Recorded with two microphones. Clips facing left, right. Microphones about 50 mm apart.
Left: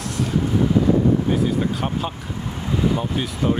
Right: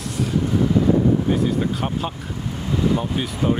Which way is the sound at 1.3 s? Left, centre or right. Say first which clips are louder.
Even; centre.